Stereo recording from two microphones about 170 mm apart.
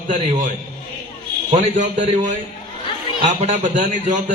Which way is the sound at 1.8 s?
45° right (ahead or behind).